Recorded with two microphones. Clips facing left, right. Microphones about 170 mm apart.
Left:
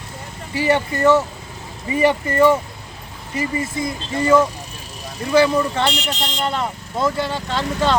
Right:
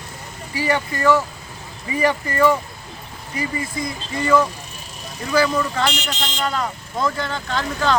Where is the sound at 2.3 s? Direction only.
25° left (ahead or behind).